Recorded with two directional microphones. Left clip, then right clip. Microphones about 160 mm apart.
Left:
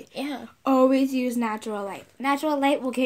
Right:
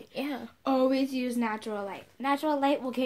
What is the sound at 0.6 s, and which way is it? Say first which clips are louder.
A woman's voice: left 6 dB; 45° left (ahead or behind).